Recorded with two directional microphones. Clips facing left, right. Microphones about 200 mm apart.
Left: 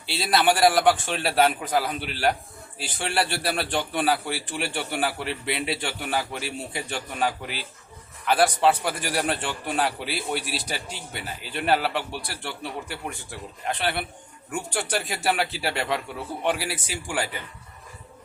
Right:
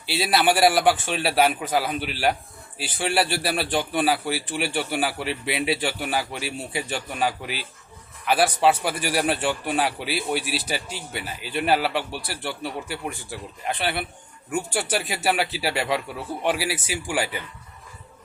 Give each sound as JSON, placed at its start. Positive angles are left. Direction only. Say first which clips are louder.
{"t": 0.1, "sound": "a man's voice", "louder": "right 1 dB", "side_deg": -5}
{"t": 14.5, "sound": "a man's voice", "louder": "right 3 dB", "side_deg": -5}